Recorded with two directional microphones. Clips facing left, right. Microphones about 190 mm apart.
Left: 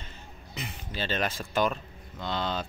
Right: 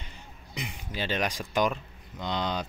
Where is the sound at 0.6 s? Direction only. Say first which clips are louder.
Right 1 dB; 15° right (ahead or behind).